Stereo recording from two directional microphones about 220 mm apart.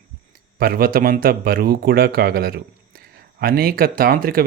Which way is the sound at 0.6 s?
40° right (ahead or behind).